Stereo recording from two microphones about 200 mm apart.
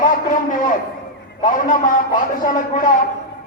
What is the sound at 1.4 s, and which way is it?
A man's voice, 40° left (ahead or behind).